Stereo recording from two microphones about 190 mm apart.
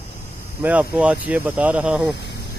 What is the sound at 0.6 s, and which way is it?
Speech, 10° right (ahead or behind).